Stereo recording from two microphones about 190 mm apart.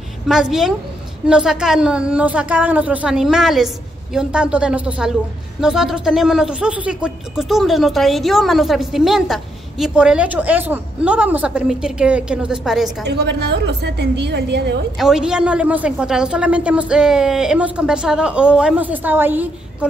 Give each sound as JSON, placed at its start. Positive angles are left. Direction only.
{"t": 0.3, "sound": "speech", "side_deg": 0}
{"t": 13.0, "sound": "a woman's voice", "side_deg": -60}
{"t": 15.0, "sound": "speech", "side_deg": -5}